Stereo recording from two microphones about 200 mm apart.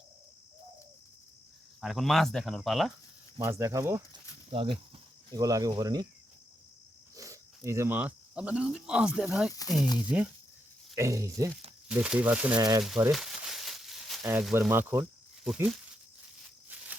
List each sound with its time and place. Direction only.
1.8 s speech: centre (ahead or behind)
3.3 s speech: 15° right (ahead or behind)
4.4 s speech: 25° right (ahead or behind)
7.2 s speech: 15° right (ahead or behind)
9.5 s speech: 15° left (ahead or behind)
10.1 s speech: 5° right (ahead or behind)
11.9 s speech: 5° right (ahead or behind)
12.5 s speech: 20° right (ahead or behind)
13.1 s a sound: centre (ahead or behind)
15.4 s speech: 5° right (ahead or behind)